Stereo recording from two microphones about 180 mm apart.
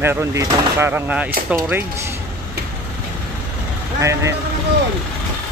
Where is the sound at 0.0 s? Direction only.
15° right (ahead or behind).